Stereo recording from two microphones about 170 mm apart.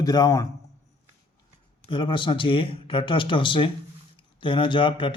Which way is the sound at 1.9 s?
30° left (ahead or behind).